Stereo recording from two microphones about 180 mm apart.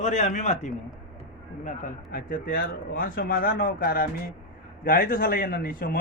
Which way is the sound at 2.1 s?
50° left (ahead or behind).